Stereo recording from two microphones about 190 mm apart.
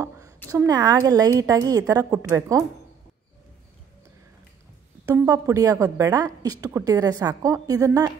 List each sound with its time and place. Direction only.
0.5 s a woman's voice: 15° right (ahead or behind)
5.0 s a woman's voice: 20° right (ahead or behind)